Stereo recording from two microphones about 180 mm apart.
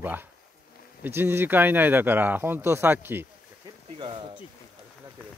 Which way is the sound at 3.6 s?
25° right (ahead or behind).